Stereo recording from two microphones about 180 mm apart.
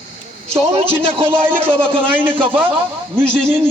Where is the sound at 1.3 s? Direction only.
10° right (ahead or behind).